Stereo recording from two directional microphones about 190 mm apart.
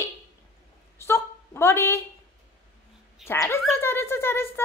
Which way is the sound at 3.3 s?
15° left (ahead or behind).